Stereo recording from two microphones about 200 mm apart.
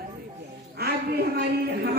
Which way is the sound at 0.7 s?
50° right (ahead or behind).